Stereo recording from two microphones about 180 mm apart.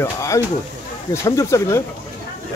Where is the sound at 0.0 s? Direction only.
15° left (ahead or behind).